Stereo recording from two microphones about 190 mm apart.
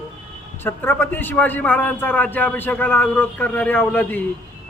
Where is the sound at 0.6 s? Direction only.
10° left (ahead or behind).